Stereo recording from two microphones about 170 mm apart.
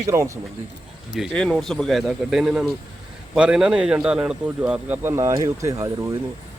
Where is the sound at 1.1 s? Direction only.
Centre (ahead or behind).